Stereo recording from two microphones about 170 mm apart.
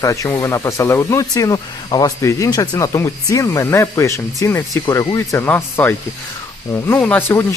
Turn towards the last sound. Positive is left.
turn(degrees=15)  # may be behind; listen again after turning